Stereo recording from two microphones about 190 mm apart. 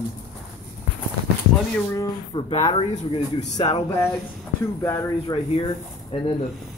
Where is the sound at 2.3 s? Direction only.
30° left (ahead or behind).